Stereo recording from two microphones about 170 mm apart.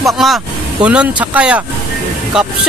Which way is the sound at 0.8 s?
10° right (ahead or behind).